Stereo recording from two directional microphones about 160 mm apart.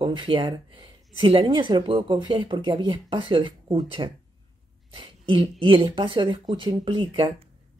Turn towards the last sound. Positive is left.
turn(degrees=-30)  # may be behind; listen again after turning